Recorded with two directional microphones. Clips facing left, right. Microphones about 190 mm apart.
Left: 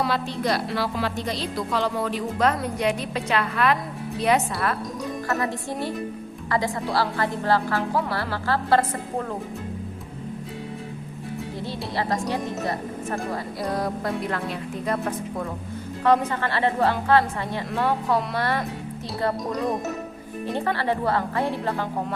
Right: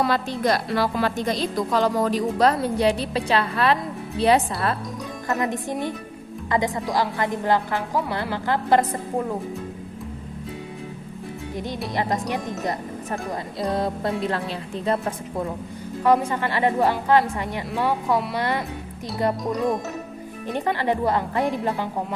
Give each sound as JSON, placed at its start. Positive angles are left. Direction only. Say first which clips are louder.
{"t": 0.0, "sound": "a woman's voice", "louder": "right 3 dB", "side_deg": -45}
{"t": 5.3, "sound": "a woman's voice", "louder": "right 4 dB", "side_deg": -20}
{"t": 11.5, "sound": "a woman's voice", "louder": "right 3 dB", "side_deg": -15}
{"t": 16.0, "sound": "a woman's voice", "louder": "right 1 dB", "side_deg": -10}